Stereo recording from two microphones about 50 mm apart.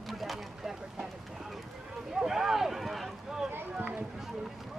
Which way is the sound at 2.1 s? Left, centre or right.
Centre.